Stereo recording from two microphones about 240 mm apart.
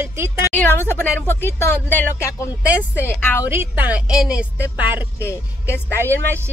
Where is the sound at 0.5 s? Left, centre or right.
Centre.